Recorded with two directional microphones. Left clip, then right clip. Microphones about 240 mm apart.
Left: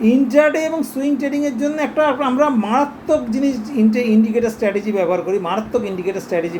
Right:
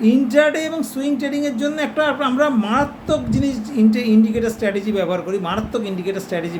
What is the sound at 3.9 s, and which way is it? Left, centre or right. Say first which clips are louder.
Speech: left 1 dB; centre.